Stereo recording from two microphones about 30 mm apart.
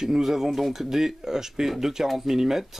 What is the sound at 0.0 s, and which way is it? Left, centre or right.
Speech, centre.